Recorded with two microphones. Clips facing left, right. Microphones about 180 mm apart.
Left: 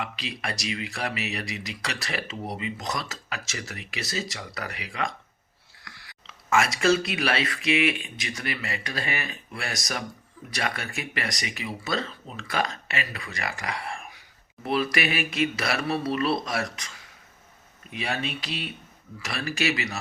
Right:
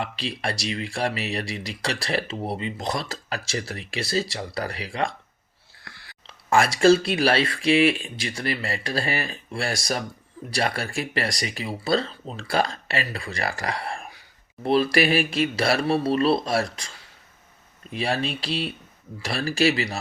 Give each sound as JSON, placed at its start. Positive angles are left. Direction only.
{"t": 0.0, "sound": "speech", "side_deg": -30}
{"t": 17.9, "sound": "speech", "side_deg": -35}